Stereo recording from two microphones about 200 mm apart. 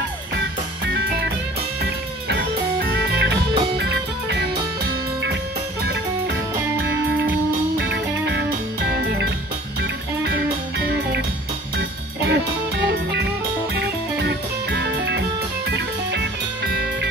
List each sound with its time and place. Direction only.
0.4 s music: 60° right (ahead or behind)
7.7 s music: 55° right (ahead or behind)
12.3 s music: 60° right (ahead or behind)
16.6 s music: 60° right (ahead or behind)